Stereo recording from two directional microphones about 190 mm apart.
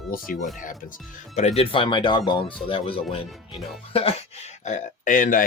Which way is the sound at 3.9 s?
30° left (ahead or behind).